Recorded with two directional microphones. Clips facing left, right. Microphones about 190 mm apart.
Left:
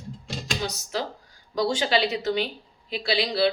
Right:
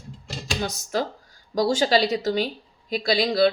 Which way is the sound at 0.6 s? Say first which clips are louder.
Right 5 dB; 45° right (ahead or behind).